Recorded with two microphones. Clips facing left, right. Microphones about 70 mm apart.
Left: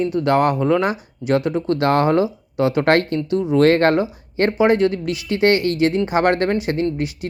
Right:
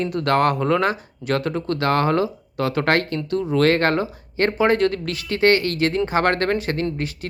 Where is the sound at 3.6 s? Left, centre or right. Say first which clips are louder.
Left 4 dB; left.